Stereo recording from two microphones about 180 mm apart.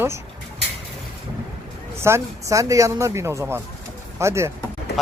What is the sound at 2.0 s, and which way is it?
Speech, 15° right (ahead or behind).